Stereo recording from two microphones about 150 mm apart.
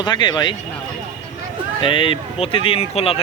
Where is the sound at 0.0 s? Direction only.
30° left (ahead or behind).